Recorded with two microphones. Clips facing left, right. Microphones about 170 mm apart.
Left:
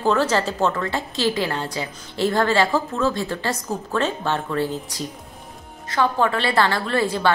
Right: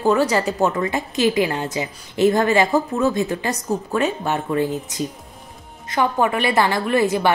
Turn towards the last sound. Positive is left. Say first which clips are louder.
# right 3 dB
turn(degrees=-15)  # may be behind; listen again after turning